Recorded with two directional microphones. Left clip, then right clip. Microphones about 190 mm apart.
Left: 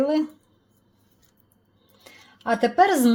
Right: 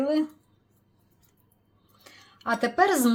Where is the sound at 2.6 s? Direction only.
20° left (ahead or behind).